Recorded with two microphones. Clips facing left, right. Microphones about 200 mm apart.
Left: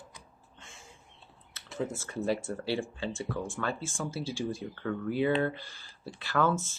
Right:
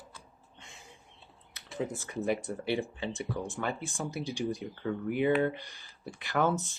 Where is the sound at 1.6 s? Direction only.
15° right (ahead or behind).